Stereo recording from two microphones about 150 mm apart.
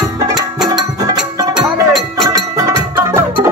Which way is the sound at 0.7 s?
25° right (ahead or behind).